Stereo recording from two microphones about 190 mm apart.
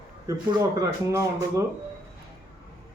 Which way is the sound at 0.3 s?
15° right (ahead or behind).